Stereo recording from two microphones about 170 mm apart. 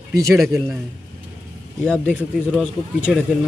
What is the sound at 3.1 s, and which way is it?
Speech, centre (ahead or behind).